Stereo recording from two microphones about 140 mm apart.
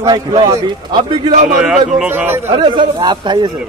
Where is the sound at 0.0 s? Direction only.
25° right (ahead or behind).